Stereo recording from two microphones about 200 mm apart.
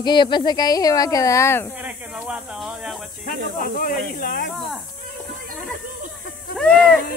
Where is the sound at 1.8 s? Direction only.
5° right (ahead or behind).